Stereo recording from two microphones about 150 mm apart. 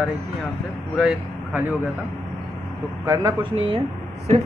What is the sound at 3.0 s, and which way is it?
Speech, 20° right (ahead or behind).